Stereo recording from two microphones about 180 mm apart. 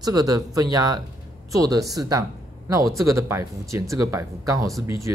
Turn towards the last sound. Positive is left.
turn(degrees=-15)  # may be behind; listen again after turning